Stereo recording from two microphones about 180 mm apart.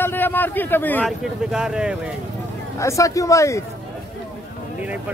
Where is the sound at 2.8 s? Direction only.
15° left (ahead or behind).